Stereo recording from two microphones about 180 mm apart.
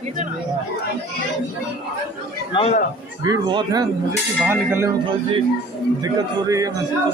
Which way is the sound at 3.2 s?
25° right (ahead or behind).